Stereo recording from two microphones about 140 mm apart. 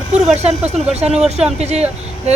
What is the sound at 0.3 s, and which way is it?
A woman's voice, 50° right (ahead or behind).